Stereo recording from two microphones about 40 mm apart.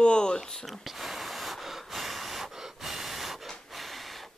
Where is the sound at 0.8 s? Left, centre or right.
Centre.